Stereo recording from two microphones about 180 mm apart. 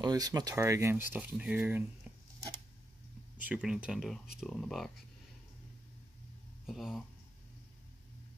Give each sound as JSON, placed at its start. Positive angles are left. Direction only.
{"t": 0.0, "sound": "speech", "side_deg": -20}
{"t": 3.4, "sound": "speech", "side_deg": -5}
{"t": 6.6, "sound": "speech", "side_deg": 0}